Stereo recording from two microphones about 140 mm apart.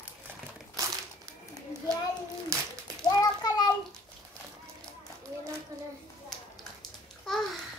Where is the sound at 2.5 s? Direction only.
20° right (ahead or behind).